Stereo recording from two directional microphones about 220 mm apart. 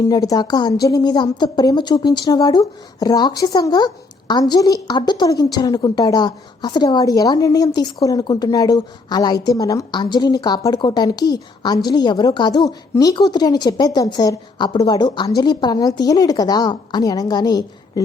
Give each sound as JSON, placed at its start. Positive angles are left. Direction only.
{"t": 0.1, "sound": "a woman's voice", "side_deg": 15}